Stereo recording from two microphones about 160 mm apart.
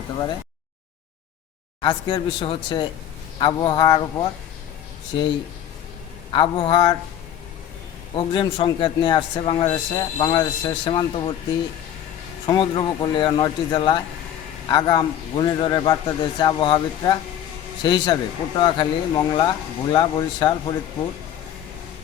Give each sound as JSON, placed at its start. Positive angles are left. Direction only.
{"t": 1.8, "sound": "speech", "side_deg": 25}
{"t": 6.3, "sound": "speech", "side_deg": 30}
{"t": 8.1, "sound": "speech", "side_deg": 30}
{"t": 9.6, "sound": "speech", "side_deg": 20}
{"t": 12.5, "sound": "speech", "side_deg": 25}